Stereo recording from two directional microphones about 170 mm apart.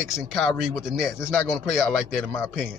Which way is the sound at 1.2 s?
15° left (ahead or behind).